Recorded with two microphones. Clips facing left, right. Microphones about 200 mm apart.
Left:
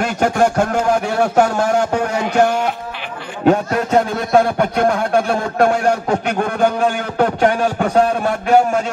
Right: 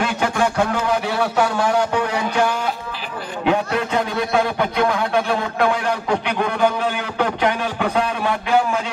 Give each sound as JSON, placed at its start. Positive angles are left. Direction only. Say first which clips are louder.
{"t": 0.0, "sound": "a man's voice", "louder": "left 4 dB", "side_deg": 45}